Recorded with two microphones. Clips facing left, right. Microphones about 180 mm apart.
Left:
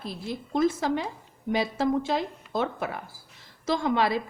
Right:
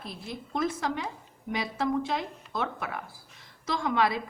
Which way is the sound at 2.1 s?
35° left (ahead or behind).